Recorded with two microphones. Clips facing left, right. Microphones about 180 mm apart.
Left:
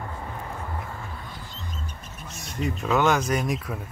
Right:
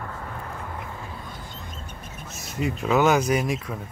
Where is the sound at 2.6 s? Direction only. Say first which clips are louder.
Right 2 dB; 5° right (ahead or behind).